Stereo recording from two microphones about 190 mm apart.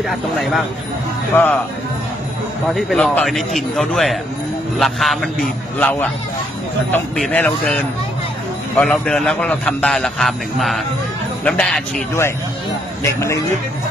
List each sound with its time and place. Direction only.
0.1 s a man's voice: centre (ahead or behind)
1.3 s a man's voice: 10° left (ahead or behind)
2.7 s a man's voice: 5° left (ahead or behind)
13.0 s a man's voice: 15° left (ahead or behind)